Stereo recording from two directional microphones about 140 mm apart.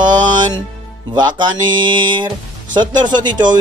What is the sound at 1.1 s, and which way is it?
Speech, 30° right (ahead or behind).